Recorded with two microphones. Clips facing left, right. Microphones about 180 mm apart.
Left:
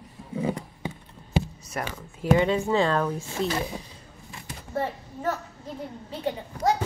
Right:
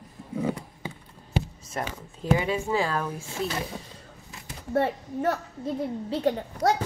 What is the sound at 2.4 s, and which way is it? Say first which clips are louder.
Speech: left 4 dB; 10° right (ahead or behind).